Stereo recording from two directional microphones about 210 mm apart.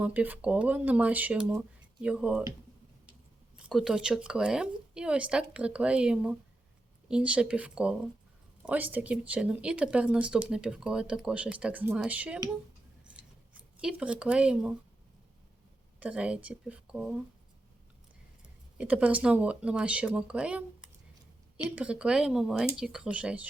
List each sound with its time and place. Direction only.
0.0 s speech: 5° right (ahead or behind)
3.7 s speech: centre (ahead or behind)
13.1 s scissors: 5° right (ahead or behind)
16.0 s speech: 5° right (ahead or behind)
18.8 s speech: 5° right (ahead or behind)